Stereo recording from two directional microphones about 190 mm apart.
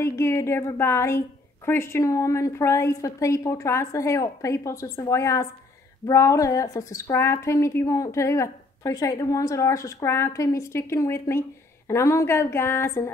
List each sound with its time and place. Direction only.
0.0 s a woman's voice: 15° left (ahead or behind)